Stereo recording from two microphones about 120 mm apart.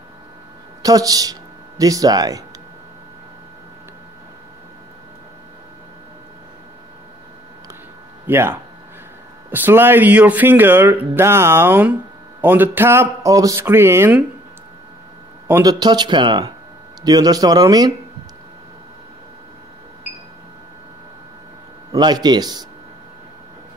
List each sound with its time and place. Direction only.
0.8 s speech: 30° right (ahead or behind)
8.3 s speech: 20° right (ahead or behind)
15.4 s a man's voice: 20° right (ahead or behind)
15.8 s speech: 35° right (ahead or behind)
21.9 s speech: 35° right (ahead or behind)